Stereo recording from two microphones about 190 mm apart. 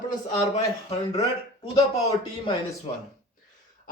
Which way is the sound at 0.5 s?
35° left (ahead or behind).